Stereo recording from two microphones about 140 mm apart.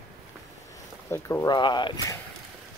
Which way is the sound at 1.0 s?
20° left (ahead or behind).